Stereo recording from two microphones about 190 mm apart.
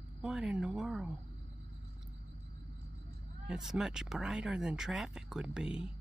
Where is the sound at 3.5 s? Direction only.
5° right (ahead or behind).